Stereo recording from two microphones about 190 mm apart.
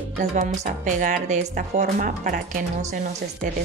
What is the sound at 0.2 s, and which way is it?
A woman's voice, 40° right (ahead or behind).